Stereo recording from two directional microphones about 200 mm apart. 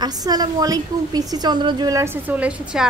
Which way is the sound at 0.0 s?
20° right (ahead or behind).